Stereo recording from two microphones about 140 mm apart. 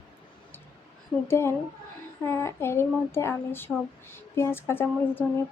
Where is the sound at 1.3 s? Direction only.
20° left (ahead or behind).